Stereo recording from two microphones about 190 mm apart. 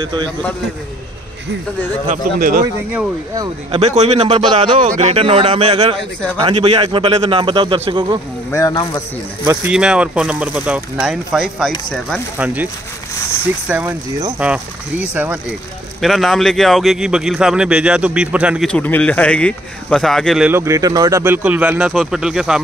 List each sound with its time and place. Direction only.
0.0 s a man's voice: 25° right (ahead or behind)
2.0 s speech: 50° right (ahead or behind)
3.3 s a man's voice: 30° right (ahead or behind)
8.5 s speech: 15° left (ahead or behind)
9.7 s speech: 5° right (ahead or behind)
13.7 s speech: 10° right (ahead or behind)
18.7 s speech: 10° left (ahead or behind)
20.4 s speech: 15° right (ahead or behind)